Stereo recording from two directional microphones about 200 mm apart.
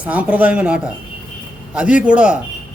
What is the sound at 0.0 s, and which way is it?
A man's voice, 5° right (ahead or behind).